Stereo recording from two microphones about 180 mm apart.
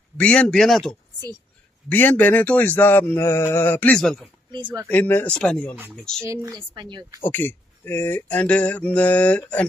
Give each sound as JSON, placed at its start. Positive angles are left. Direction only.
{"t": 0.2, "sound": "speech", "side_deg": 5}
{"t": 6.2, "sound": "a woman's voice", "side_deg": -15}
{"t": 7.2, "sound": "speech", "side_deg": 10}